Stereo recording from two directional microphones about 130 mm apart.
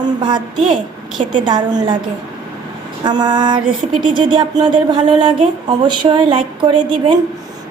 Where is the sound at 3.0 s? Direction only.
35° right (ahead or behind).